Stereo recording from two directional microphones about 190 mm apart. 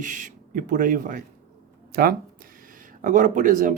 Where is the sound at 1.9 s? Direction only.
55° right (ahead or behind).